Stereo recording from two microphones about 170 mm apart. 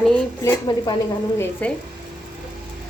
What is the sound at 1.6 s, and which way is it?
Speech, 10° left (ahead or behind).